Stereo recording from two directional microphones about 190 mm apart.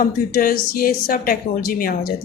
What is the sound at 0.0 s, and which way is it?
Speech, 50° left (ahead or behind).